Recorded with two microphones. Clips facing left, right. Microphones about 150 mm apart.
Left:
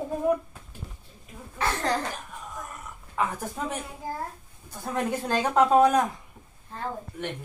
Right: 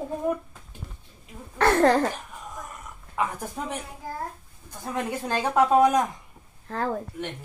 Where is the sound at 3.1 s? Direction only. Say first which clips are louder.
Even; 10° right (ahead or behind).